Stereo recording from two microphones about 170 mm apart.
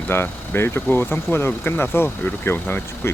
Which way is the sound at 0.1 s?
15° left (ahead or behind).